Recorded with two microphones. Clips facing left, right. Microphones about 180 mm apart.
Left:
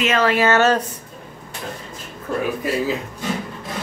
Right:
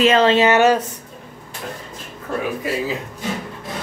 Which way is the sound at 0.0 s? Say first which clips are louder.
Right 4 dB; 25° right (ahead or behind).